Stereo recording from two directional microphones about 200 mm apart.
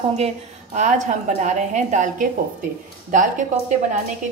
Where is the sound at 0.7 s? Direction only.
35° right (ahead or behind).